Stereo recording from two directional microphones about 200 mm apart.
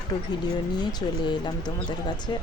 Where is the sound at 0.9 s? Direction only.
20° left (ahead or behind).